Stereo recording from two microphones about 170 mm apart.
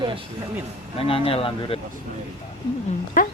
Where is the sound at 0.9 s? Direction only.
35° left (ahead or behind).